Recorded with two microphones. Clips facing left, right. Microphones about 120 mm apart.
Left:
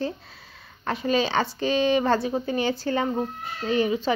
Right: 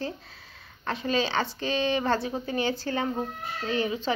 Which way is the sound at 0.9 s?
15° left (ahead or behind).